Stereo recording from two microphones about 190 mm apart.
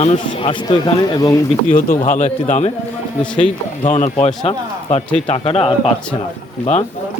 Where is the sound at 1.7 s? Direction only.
45° left (ahead or behind).